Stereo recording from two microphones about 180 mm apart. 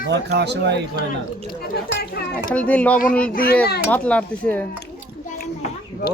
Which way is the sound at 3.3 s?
55° left (ahead or behind).